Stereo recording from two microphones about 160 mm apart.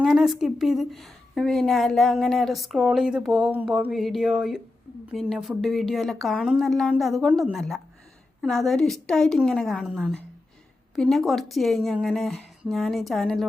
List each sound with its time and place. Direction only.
0.0 s a woman's voice: centre (ahead or behind)